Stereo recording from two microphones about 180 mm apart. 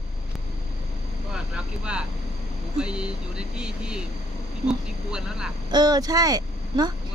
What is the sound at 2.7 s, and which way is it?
Speech, 5° right (ahead or behind).